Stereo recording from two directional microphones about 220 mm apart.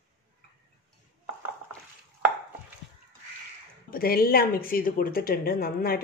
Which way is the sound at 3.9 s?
40° left (ahead or behind).